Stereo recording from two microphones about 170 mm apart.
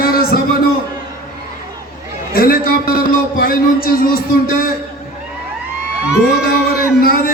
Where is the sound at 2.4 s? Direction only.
60° left (ahead or behind).